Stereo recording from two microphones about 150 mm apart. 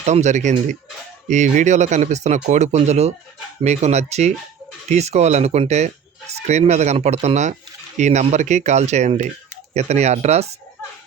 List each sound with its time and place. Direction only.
0.0 s speech: 50° right (ahead or behind)